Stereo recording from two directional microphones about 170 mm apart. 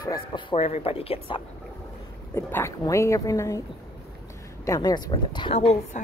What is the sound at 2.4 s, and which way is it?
Speech, 15° left (ahead or behind).